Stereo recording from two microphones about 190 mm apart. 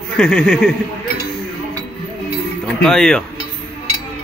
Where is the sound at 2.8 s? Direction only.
5° left (ahead or behind).